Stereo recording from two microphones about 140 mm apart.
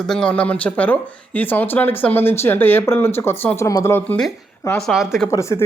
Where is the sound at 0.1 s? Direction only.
5° left (ahead or behind).